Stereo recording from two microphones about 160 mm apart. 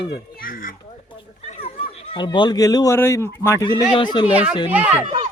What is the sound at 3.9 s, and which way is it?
Speech, 30° left (ahead or behind).